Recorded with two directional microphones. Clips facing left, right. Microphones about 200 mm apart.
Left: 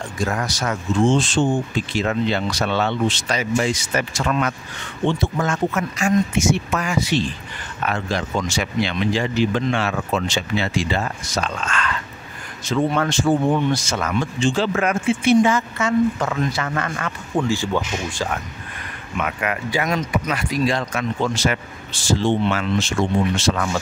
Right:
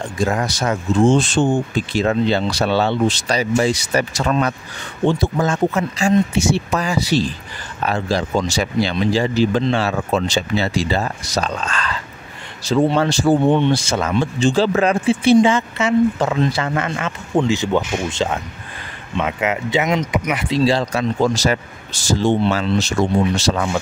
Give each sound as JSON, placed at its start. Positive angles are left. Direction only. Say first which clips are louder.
{"t": 0.2, "sound": "speech", "louder": "right 4 dB", "side_deg": -25}
{"t": 1.0, "sound": "speech", "louder": "right 3 dB", "side_deg": -55}
{"t": 2.0, "sound": "speech", "louder": "right 4 dB", "side_deg": -35}
{"t": 23.5, "sound": "speech", "louder": "right 3 dB", "side_deg": -20}